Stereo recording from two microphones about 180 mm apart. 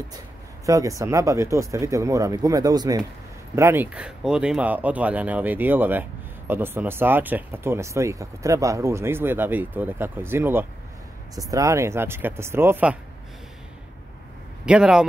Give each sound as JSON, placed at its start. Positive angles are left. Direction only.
{"t": 0.7, "sound": "speech", "side_deg": -20}
{"t": 14.7, "sound": "a man's voice", "side_deg": -5}